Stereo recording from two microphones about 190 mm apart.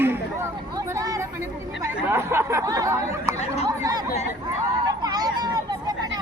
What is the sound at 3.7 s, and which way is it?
Chatter, 20° right (ahead or behind).